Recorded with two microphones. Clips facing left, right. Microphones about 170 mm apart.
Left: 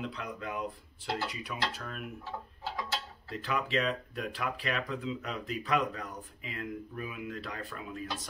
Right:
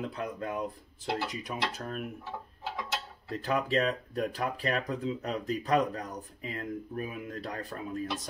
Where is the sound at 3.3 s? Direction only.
40° right (ahead or behind).